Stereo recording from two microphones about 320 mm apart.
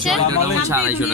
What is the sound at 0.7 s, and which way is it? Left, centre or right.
Speech, centre.